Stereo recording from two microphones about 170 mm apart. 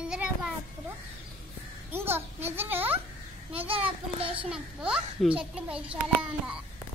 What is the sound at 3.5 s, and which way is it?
Speech, 35° right (ahead or behind).